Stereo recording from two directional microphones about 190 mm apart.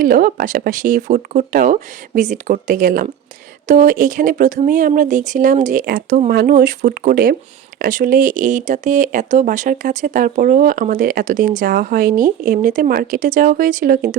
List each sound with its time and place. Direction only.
0.0 s speech: 45° right (ahead or behind)